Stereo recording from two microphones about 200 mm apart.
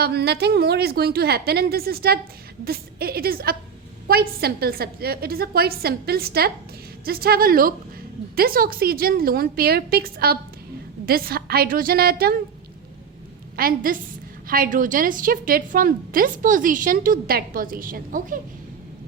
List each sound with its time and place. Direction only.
0.0 s a woman's voice: 55° right (ahead or behind)
13.6 s a woman's voice: 45° right (ahead or behind)